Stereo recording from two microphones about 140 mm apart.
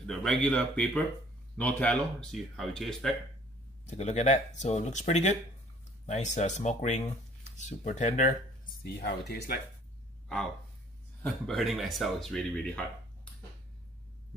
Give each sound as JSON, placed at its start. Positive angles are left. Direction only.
{"t": 0.0, "sound": "speech", "side_deg": 5}
{"t": 3.9, "sound": "speech", "side_deg": 55}
{"t": 9.5, "sound": "speech", "side_deg": 90}
{"t": 10.2, "sound": "speech", "side_deg": 5}